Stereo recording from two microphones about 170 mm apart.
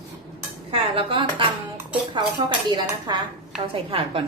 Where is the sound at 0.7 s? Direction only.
30° right (ahead or behind).